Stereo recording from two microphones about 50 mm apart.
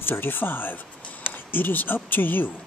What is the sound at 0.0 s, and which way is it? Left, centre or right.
Speech, left.